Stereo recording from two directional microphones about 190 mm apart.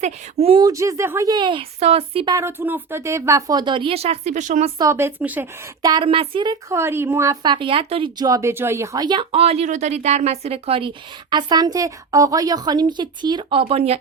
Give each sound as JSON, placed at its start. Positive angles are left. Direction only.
{"t": 0.0, "sound": "a woman's voice", "side_deg": -30}
{"t": 2.3, "sound": "a woman's voice", "side_deg": -15}
{"t": 4.8, "sound": "speech", "side_deg": -15}
{"t": 5.8, "sound": "a woman's voice", "side_deg": -25}